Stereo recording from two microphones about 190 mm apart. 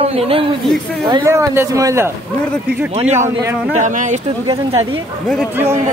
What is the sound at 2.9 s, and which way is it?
Speech, 35° right (ahead or behind).